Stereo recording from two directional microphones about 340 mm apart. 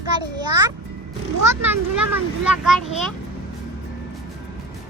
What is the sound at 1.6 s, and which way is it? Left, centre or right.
A child's voice, centre.